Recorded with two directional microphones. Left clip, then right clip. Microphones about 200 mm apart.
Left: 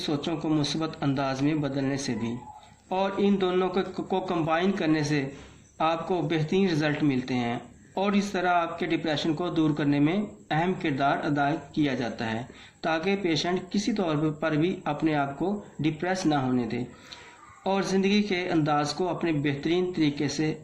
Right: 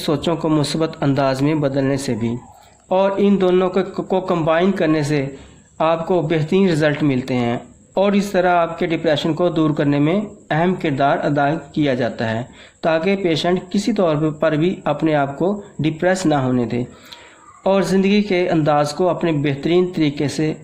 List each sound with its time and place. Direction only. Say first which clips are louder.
0.0 s a man's voice: right 10 dB; 50° right (ahead or behind)